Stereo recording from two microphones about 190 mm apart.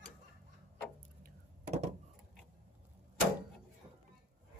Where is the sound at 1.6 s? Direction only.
35° right (ahead or behind).